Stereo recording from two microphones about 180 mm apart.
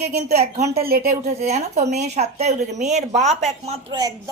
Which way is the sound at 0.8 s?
55° right (ahead or behind).